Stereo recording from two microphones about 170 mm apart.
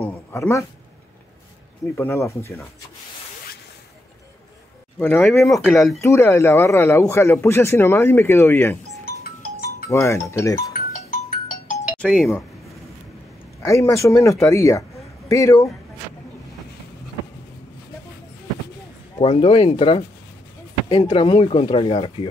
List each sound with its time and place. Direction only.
0.0 s a sound: 15° left (ahead or behind)
2.0 s speech: 15° left (ahead or behind)
4.9 s speech: 10° left (ahead or behind)
5.9 s speech: 15° left (ahead or behind)
9.8 s speech: 15° left (ahead or behind)
10.7 s music: 50° left (ahead or behind)
12.0 s speech: centre (ahead or behind)
13.6 s speech: 20° left (ahead or behind)
19.1 s speech: 35° left (ahead or behind)